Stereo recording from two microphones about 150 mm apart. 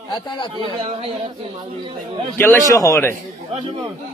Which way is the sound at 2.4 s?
15° left (ahead or behind).